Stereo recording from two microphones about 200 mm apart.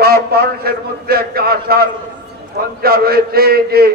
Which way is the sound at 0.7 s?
50° right (ahead or behind).